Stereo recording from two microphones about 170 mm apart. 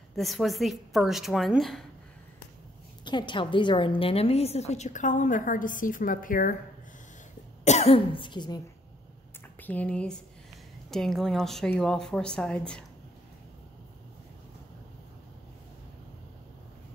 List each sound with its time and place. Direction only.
0.1 s a woman's voice: centre (ahead or behind)
3.1 s a woman's voice: 25° left (ahead or behind); by 6.5 s 55° left (ahead or behind)
7.6 s a woman's voice: 40° left (ahead or behind)
9.6 s a woman's voice: 10° left (ahead or behind)